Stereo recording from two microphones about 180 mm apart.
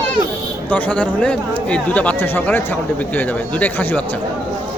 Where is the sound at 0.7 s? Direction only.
10° left (ahead or behind).